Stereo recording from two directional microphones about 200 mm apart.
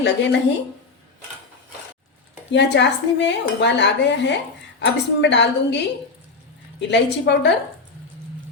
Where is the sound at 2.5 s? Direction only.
60° left (ahead or behind).